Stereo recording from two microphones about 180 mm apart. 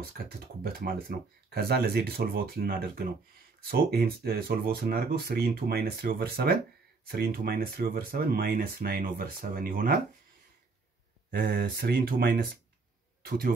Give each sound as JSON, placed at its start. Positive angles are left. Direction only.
{"t": 0.2, "sound": "speech", "side_deg": -60}
{"t": 11.2, "sound": "speech", "side_deg": -50}